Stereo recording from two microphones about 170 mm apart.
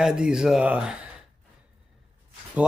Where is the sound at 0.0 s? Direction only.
5° right (ahead or behind).